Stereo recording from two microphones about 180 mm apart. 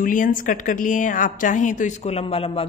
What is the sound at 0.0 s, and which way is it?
A woman's voice, 50° left (ahead or behind).